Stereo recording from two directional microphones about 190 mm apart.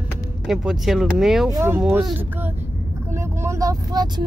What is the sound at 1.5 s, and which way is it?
Speech, 20° right (ahead or behind).